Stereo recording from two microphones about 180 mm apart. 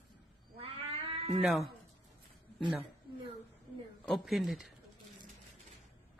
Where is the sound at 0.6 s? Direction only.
35° right (ahead or behind).